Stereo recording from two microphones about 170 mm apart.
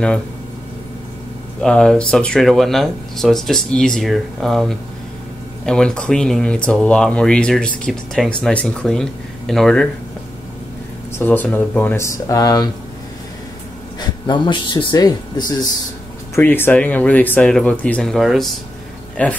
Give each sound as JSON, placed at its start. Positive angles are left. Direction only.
{"t": 1.6, "sound": "speech", "side_deg": 5}
{"t": 11.1, "sound": "speech", "side_deg": 10}
{"t": 13.9, "sound": "speech", "side_deg": 25}